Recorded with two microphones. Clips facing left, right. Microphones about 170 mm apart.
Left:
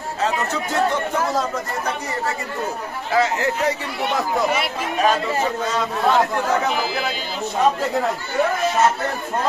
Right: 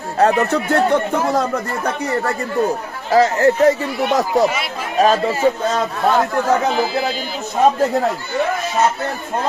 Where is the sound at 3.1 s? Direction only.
40° right (ahead or behind).